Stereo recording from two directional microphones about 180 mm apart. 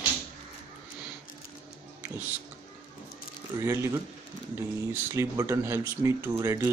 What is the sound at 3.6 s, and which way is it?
Speech, 15° right (ahead or behind).